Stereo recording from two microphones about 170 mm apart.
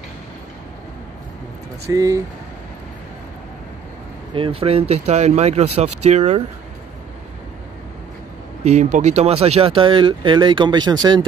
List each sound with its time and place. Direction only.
1.9 s speech: 20° right (ahead or behind)
4.4 s speech: 35° right (ahead or behind)
8.6 s speech: 40° right (ahead or behind); by 11.2 s 25° right (ahead or behind)